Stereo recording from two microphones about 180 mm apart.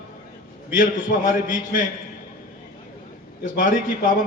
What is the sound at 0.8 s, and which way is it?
A man's voice, 50° left (ahead or behind).